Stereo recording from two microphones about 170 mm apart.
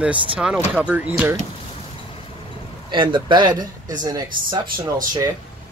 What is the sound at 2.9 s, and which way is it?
Speech, 30° right (ahead or behind).